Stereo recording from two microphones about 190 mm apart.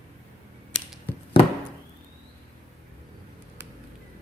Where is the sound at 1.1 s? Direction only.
10° left (ahead or behind).